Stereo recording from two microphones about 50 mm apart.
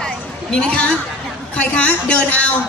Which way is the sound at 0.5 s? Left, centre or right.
Left.